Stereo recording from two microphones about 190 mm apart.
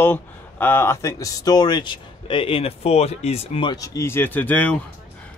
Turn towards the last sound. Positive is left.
turn(degrees=10)  # may be behind; listen again after turning